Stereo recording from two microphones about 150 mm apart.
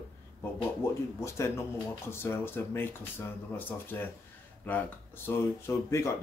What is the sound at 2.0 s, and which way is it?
Speech, 15° left (ahead or behind).